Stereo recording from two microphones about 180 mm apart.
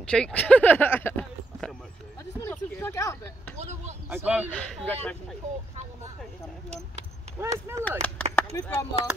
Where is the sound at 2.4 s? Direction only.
15° left (ahead or behind).